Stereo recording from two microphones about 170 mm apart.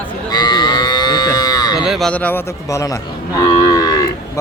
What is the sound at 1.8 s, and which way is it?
Speech, centre (ahead or behind).